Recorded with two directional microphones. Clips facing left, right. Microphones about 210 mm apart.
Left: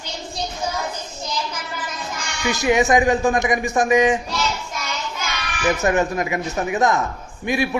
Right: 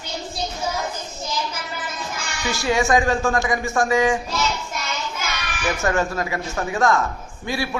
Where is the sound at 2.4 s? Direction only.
20° left (ahead or behind).